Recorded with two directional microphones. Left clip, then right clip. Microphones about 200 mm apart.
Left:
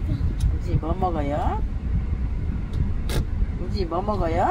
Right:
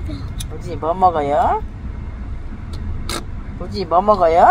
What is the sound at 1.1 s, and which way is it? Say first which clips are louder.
Speech: right 9 dB; 35° right (ahead or behind).